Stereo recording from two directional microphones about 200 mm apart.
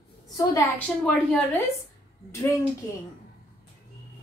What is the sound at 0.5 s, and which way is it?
Speech, 15° left (ahead or behind).